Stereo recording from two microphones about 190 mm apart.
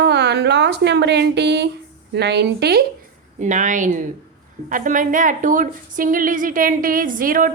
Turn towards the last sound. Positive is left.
turn(degrees=-45)  # may be behind; listen again after turning